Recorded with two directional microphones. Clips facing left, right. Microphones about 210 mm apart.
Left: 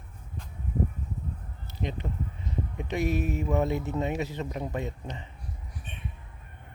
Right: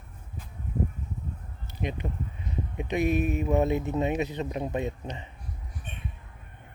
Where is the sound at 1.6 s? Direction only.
15° right (ahead or behind).